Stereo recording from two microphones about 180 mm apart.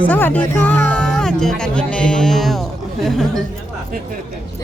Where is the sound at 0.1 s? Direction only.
10° left (ahead or behind).